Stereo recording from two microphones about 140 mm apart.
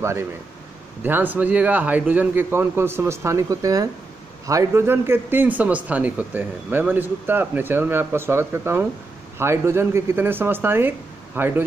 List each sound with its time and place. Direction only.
0.0 s speech: 20° right (ahead or behind)